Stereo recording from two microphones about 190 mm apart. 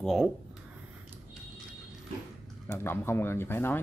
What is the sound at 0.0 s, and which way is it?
Speech, centre (ahead or behind).